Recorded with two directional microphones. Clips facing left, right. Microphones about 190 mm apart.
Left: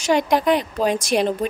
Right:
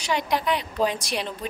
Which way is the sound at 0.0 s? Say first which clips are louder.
Left 7 dB; 45° left (ahead or behind).